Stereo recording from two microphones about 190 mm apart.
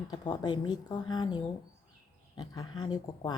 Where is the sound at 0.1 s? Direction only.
20° left (ahead or behind).